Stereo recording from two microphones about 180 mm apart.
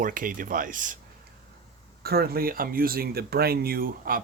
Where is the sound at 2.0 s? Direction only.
60° right (ahead or behind).